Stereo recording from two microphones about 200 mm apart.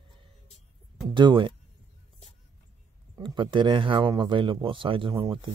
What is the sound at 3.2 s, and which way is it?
Speech, 25° right (ahead or behind).